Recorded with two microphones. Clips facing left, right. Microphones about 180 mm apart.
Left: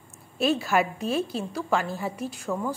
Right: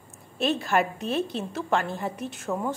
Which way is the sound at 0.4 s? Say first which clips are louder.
Left 1 dB; 5° left (ahead or behind).